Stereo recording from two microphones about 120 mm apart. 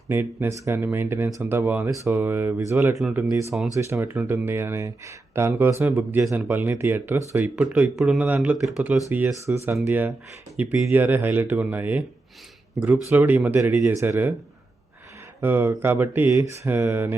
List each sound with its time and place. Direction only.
0.1 s speech: 20° right (ahead or behind)
15.4 s speech: 15° right (ahead or behind)
16.3 s speech: 30° right (ahead or behind)
16.6 s speech: 15° right (ahead or behind)